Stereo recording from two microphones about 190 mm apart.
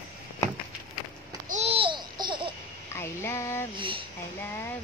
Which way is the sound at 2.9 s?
15° left (ahead or behind).